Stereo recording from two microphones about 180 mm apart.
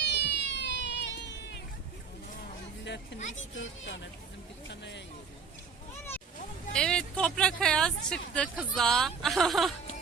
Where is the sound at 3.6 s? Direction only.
90° left.